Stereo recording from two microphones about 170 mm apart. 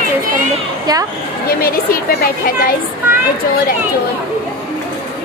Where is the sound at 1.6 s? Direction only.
60° left (ahead or behind).